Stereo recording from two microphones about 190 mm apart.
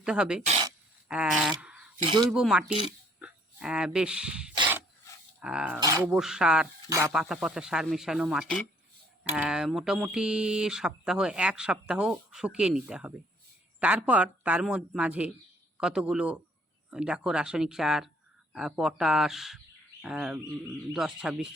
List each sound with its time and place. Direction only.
0.0 s speech: 5° right (ahead or behind)
1.6 s a sound: 5° right (ahead or behind)
2.0 s speech: 20° right (ahead or behind)
2.3 s speech: 5° right (ahead or behind)
5.8 s speech: 15° right (ahead or behind)
6.1 s speech: 5° right (ahead or behind)